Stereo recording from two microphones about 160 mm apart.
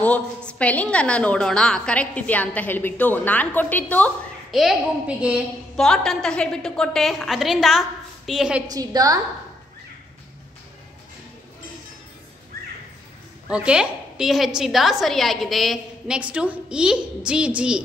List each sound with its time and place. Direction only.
0.0 s a woman's voice: 10° left (ahead or behind)
4.5 s a woman's voice: centre (ahead or behind)
5.8 s a woman's voice: 5° left (ahead or behind)
8.6 s a woman's voice: 25° right (ahead or behind)
13.5 s a woman's voice: 5° right (ahead or behind)